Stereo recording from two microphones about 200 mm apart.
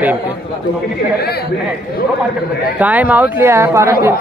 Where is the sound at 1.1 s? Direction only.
50° left (ahead or behind).